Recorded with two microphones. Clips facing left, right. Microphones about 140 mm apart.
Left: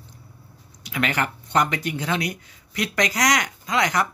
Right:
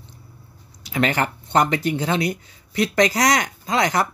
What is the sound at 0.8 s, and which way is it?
Speech, 35° right (ahead or behind).